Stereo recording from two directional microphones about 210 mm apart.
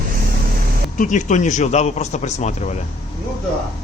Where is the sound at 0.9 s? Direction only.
35° left (ahead or behind).